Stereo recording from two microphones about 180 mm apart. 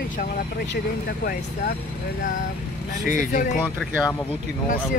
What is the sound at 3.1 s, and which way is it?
Speech, 45° left (ahead or behind).